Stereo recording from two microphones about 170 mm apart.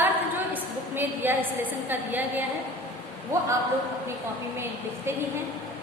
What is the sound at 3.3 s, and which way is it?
Speech, 15° right (ahead or behind).